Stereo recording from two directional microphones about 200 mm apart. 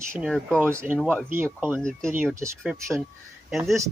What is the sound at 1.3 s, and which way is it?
Speech, 10° right (ahead or behind).